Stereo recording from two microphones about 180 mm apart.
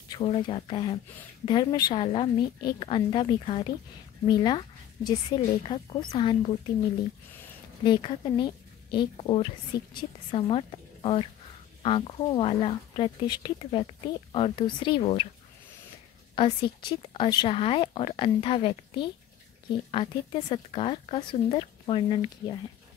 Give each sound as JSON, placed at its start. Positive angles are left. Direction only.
{"t": 0.1, "sound": "speech", "side_deg": 25}
{"t": 7.8, "sound": "a woman's voice", "side_deg": 25}
{"t": 16.4, "sound": "speech", "side_deg": 25}